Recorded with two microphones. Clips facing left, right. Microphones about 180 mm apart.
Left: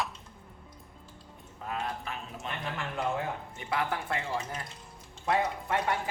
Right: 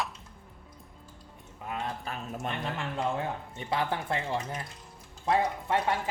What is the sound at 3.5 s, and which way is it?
Speech, 30° right (ahead or behind).